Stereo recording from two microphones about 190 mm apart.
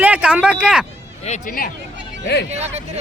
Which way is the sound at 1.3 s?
50° left (ahead or behind).